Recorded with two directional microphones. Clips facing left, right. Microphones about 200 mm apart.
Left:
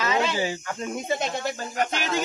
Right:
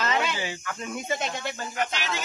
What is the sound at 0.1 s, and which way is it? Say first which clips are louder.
Speech: left 4 dB; 35° left (ahead or behind).